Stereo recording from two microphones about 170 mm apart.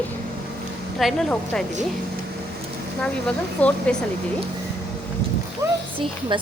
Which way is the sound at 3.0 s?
5° left (ahead or behind).